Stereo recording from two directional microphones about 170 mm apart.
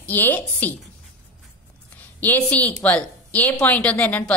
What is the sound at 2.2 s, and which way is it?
A woman's voice, 10° left (ahead or behind).